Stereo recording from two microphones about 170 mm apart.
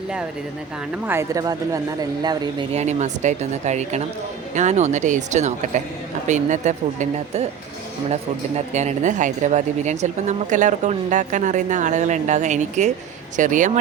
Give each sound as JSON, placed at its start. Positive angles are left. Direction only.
{"t": 1.0, "sound": "speech", "side_deg": -15}
{"t": 2.7, "sound": "speech", "side_deg": -45}